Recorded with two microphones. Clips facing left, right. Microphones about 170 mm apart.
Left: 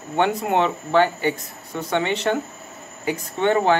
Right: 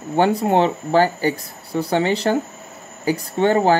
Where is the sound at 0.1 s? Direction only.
35° right (ahead or behind).